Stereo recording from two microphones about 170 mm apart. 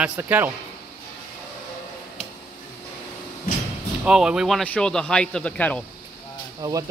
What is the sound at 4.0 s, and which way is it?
Speech, 5° right (ahead or behind).